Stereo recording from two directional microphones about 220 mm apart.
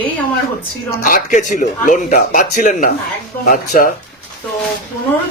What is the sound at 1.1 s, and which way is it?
Speech, 35° left (ahead or behind).